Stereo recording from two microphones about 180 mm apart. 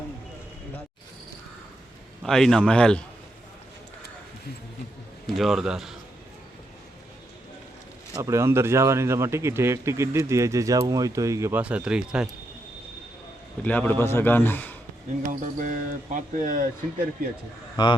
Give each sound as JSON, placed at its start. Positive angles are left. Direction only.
{"t": 2.2, "sound": "a man's voice", "side_deg": 0}
{"t": 5.2, "sound": "a man's voice", "side_deg": 0}
{"t": 8.1, "sound": "speech", "side_deg": -15}
{"t": 13.7, "sound": "a man's voice", "side_deg": 10}
{"t": 15.3, "sound": "speech", "side_deg": -45}
{"t": 17.8, "sound": "speech", "side_deg": 25}